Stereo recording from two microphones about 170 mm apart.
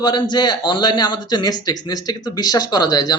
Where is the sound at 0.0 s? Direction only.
25° left (ahead or behind).